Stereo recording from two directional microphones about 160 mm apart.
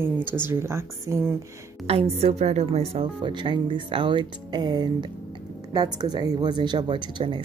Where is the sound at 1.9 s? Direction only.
40° right (ahead or behind).